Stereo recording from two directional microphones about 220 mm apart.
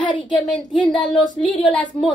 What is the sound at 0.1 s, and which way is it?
Speech, 20° left (ahead or behind).